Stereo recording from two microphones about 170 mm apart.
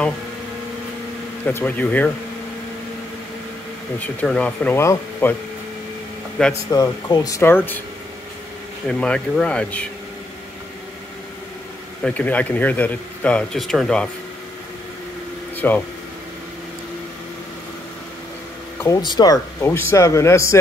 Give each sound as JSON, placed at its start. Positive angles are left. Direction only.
{"t": 1.4, "sound": "speech", "side_deg": 10}
{"t": 4.0, "sound": "speech", "side_deg": 10}
{"t": 6.4, "sound": "speech", "side_deg": 5}
{"t": 6.7, "sound": "speech", "side_deg": 20}
{"t": 8.8, "sound": "speech", "side_deg": 5}
{"t": 12.0, "sound": "speech", "side_deg": 10}
{"t": 15.5, "sound": "air conditioning", "side_deg": 10}
{"t": 18.8, "sound": "speech", "side_deg": 20}